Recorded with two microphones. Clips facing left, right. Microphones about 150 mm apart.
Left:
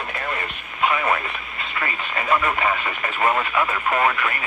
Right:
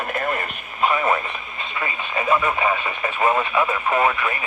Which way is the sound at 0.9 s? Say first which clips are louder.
Right 2 dB; 25° right (ahead or behind).